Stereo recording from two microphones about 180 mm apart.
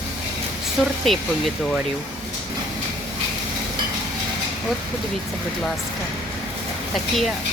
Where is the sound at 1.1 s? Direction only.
Centre (ahead or behind).